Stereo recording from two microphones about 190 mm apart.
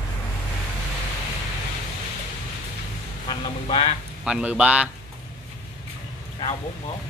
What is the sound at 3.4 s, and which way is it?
Speech, 25° left (ahead or behind).